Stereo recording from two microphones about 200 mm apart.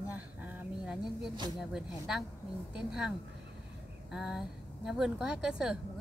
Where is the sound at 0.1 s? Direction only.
10° right (ahead or behind).